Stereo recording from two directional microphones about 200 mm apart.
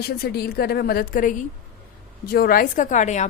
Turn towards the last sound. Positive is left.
turn(degrees=35)  # may be behind; listen again after turning